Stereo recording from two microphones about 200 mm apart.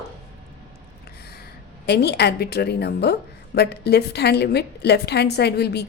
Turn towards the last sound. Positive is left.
turn(degrees=55)  # may be behind; listen again after turning